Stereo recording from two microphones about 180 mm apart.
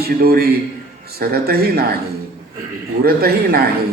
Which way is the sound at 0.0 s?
60° right (ahead or behind).